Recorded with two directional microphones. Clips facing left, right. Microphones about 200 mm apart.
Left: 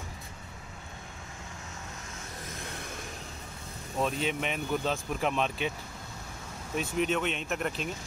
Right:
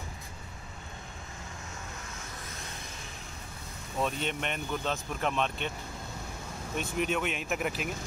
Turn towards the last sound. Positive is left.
turn(degrees=-5)  # may be behind; listen again after turning